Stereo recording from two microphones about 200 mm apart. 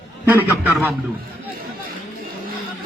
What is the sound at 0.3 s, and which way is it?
Speech, 10° right (ahead or behind).